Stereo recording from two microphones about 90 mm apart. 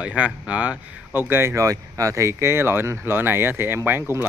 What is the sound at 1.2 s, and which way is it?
A man's voice, 25° right (ahead or behind).